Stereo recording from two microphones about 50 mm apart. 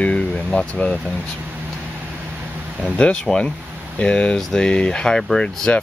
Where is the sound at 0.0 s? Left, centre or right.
Centre.